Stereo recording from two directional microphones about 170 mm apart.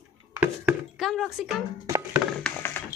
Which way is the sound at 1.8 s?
20° right (ahead or behind).